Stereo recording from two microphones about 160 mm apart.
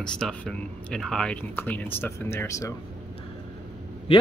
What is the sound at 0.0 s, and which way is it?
Speech, 5° left (ahead or behind).